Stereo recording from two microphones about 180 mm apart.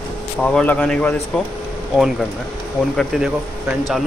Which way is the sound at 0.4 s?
5° left (ahead or behind).